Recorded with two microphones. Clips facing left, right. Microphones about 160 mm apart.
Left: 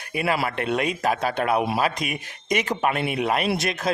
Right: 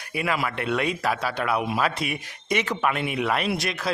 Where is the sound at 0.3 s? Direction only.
35° left (ahead or behind).